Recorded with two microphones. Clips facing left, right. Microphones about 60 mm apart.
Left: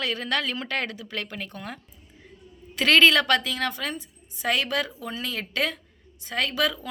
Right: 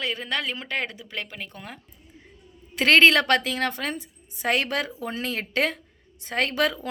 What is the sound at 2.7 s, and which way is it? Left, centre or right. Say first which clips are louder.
A woman's voice: right 1 dB; right.